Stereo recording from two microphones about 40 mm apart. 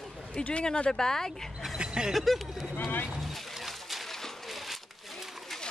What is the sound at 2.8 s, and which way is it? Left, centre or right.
Speech, left.